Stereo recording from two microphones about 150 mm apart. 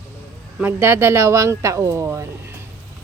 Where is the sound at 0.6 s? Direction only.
15° right (ahead or behind).